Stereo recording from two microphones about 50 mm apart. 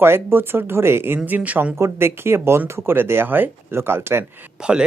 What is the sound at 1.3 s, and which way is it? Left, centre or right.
Speech, right.